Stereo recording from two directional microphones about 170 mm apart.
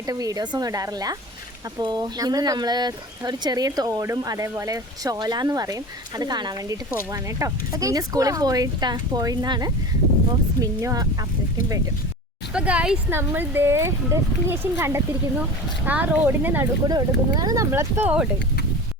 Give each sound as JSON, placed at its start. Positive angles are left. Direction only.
{"t": 0.0, "sound": "speech", "side_deg": -20}
{"t": 12.5, "sound": "speech", "side_deg": -5}
{"t": 16.9, "sound": "speech", "side_deg": -25}